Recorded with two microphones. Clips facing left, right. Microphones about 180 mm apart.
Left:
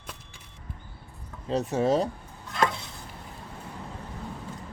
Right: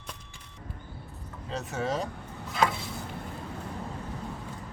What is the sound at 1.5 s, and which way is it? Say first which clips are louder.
Speech: left 7 dB; 35° left (ahead or behind).